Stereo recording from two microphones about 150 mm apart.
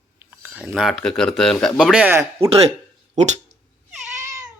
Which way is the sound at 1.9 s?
10° right (ahead or behind).